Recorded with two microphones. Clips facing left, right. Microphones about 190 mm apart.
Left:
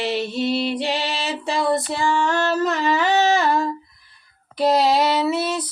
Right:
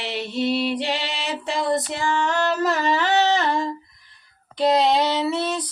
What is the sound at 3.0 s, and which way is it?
Humming, 10° left (ahead or behind).